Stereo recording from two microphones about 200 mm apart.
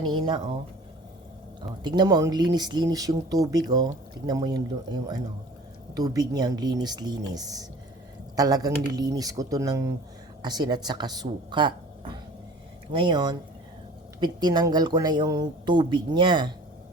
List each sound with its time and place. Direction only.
0.0 s speech: 25° right (ahead or behind)
1.8 s speech: 20° right (ahead or behind)